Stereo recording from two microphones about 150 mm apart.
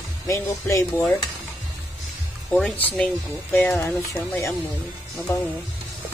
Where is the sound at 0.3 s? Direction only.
20° left (ahead or behind).